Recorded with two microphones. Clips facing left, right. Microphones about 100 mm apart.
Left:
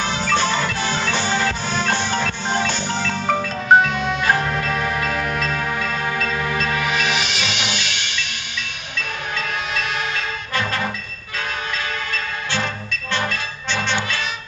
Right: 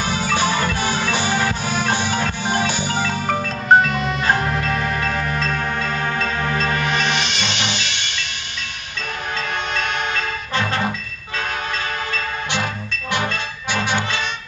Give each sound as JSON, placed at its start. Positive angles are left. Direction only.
{"t": 0.0, "sound": "music", "side_deg": -10}
{"t": 5.8, "sound": "music", "side_deg": -30}
{"t": 6.7, "sound": "music", "side_deg": 5}
{"t": 13.1, "sound": "music", "side_deg": -15}